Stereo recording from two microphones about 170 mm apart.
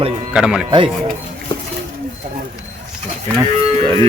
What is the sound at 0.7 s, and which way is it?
Speech, 30° right (ahead or behind).